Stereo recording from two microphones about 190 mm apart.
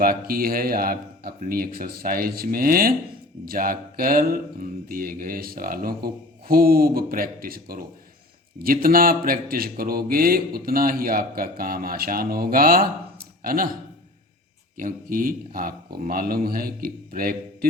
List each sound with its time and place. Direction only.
0.0 s a man's voice: 50° right (ahead or behind)
14.8 s a man's voice: 45° right (ahead or behind)